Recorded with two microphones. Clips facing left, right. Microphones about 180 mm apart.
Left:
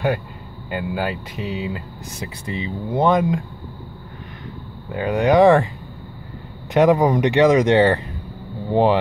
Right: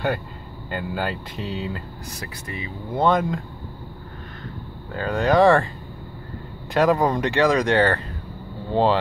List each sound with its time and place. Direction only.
0.7 s speech: 10° left (ahead or behind)
2.1 s speech: 25° left (ahead or behind)
4.9 s speech: 15° left (ahead or behind)
6.7 s speech: 20° left (ahead or behind)